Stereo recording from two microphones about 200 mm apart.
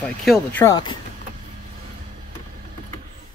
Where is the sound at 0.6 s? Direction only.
20° left (ahead or behind).